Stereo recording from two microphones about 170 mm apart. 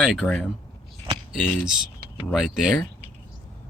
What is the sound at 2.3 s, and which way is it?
Speech, centre (ahead or behind).